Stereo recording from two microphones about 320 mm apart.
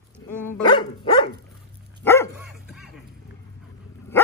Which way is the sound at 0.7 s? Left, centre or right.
Centre.